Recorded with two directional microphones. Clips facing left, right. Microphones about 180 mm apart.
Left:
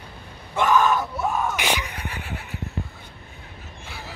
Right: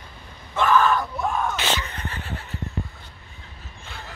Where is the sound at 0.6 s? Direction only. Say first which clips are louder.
Even; 10° left (ahead or behind).